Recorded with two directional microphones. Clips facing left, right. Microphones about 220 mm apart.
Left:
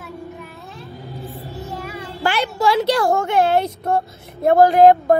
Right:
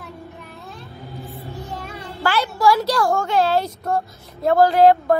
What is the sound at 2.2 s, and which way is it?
Speech, 20° left (ahead or behind).